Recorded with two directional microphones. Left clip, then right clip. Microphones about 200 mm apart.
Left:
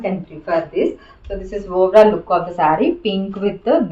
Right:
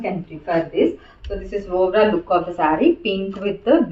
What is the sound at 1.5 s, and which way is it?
A woman's voice, 55° left (ahead or behind).